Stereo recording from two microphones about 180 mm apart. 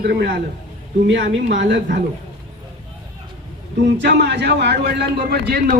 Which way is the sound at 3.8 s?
70° right (ahead or behind).